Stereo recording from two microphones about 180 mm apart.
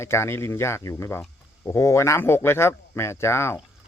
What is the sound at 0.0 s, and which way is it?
Speech, 15° left (ahead or behind).